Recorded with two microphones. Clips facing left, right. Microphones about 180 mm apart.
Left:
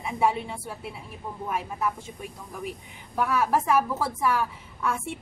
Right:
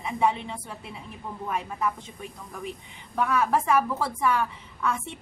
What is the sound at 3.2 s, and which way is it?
A woman's voice, 5° left (ahead or behind).